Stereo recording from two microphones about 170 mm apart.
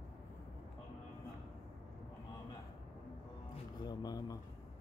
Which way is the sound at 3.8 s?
25° left (ahead or behind).